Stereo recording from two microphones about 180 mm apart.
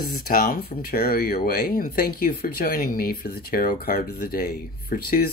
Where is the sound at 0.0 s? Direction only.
55° left (ahead or behind).